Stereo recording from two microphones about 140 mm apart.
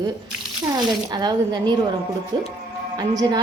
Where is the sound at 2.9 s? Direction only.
30° right (ahead or behind).